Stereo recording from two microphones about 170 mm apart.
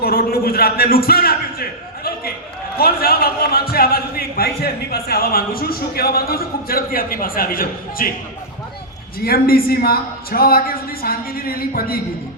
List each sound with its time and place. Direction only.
0.0 s a woman's voice: 60° left (ahead or behind)
2.7 s a man's voice: 60° left (ahead or behind)
9.2 s a woman's voice: 60° left (ahead or behind)